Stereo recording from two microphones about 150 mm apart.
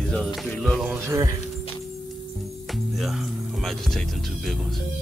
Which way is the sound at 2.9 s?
Centre (ahead or behind).